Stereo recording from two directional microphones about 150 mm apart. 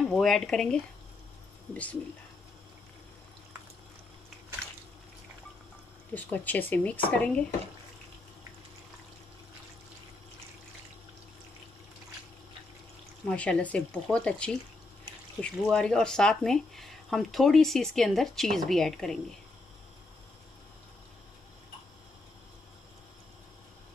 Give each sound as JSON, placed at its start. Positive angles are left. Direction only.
{"t": 0.0, "sound": "speech", "side_deg": 0}
{"t": 6.1, "sound": "speech", "side_deg": 10}
{"t": 13.3, "sound": "speech", "side_deg": 10}